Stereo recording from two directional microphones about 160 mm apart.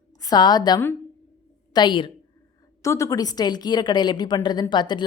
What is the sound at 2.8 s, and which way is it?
A woman's voice, 20° left (ahead or behind).